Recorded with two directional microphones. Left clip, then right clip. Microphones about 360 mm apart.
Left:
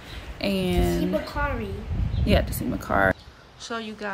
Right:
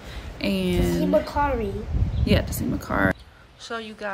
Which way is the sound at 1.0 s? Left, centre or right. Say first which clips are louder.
Right 5 dB; right.